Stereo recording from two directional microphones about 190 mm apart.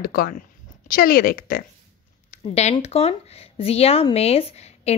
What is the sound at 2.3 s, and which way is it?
Speech, 35° left (ahead or behind).